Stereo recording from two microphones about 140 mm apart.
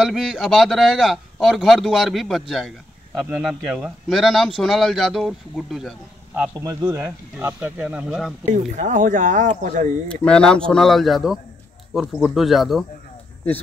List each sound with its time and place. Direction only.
0.0 s a man's voice: centre (ahead or behind)
6.5 s speech: 25° right (ahead or behind); by 8.4 s 5° right (ahead or behind)
8.5 s speech: 60° right (ahead or behind)
10.0 s a man's voice: 5° left (ahead or behind)